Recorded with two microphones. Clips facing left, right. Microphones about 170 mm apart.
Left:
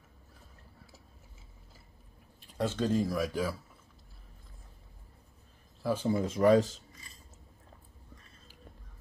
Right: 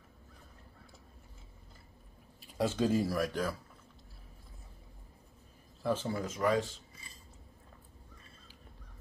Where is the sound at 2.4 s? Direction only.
10° right (ahead or behind).